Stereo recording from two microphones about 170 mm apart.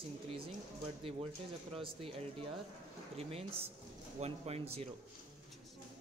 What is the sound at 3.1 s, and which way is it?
Speech, 35° right (ahead or behind).